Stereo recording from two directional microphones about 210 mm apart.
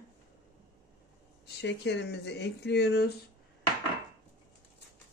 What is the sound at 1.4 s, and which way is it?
Speech, 55° left (ahead or behind).